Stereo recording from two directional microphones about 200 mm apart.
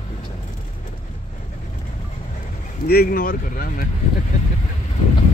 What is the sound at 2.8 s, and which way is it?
Speech, 50° left (ahead or behind).